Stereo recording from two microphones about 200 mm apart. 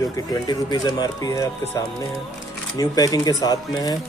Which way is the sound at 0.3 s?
20° left (ahead or behind).